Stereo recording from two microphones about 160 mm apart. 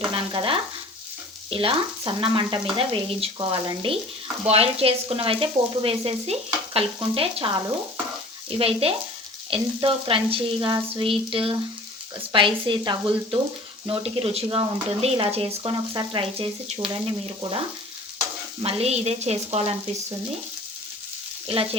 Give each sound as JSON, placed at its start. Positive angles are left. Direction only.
{"t": 0.1, "sound": "frying", "side_deg": -35}
{"t": 1.5, "sound": "speech", "side_deg": -35}
{"t": 18.6, "sound": "speech", "side_deg": -40}
{"t": 21.4, "sound": "speech", "side_deg": -35}